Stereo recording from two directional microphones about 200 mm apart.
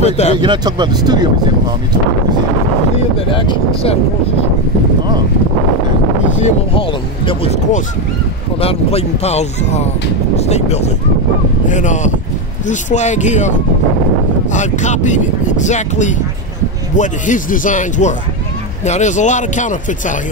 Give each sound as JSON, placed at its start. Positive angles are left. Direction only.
{"t": 0.0, "sound": "speech", "side_deg": 35}
{"t": 0.4, "sound": "speech", "side_deg": -25}
{"t": 3.3, "sound": "speech", "side_deg": 25}
{"t": 6.3, "sound": "speech", "side_deg": 30}
{"t": 8.5, "sound": "speech", "side_deg": 30}